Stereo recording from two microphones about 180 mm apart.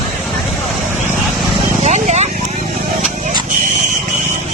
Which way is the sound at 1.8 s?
40° right (ahead or behind).